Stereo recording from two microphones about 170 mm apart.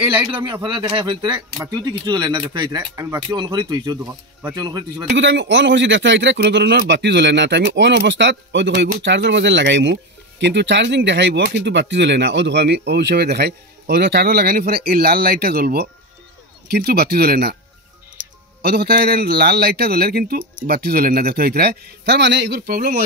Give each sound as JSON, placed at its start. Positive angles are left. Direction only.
{"t": 0.3, "sound": "speech", "side_deg": -25}
{"t": 5.1, "sound": "a man's voice", "side_deg": -90}
{"t": 18.6, "sound": "a man's voice", "side_deg": -70}